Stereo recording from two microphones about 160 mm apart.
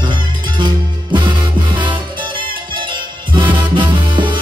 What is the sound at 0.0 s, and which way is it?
Music, 30° right (ahead or behind).